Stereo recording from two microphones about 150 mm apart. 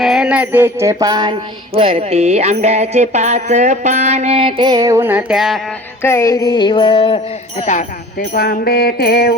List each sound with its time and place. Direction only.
0.0 s music: 5° right (ahead or behind); by 1.4 s 25° right (ahead or behind)
1.7 s music: 40° right (ahead or behind); by 5.5 s 5° right (ahead or behind)
6.0 s music: 20° left (ahead or behind); by 7.2 s 35° left (ahead or behind)
7.6 s music: 55° left (ahead or behind); by 9.3 s 90° left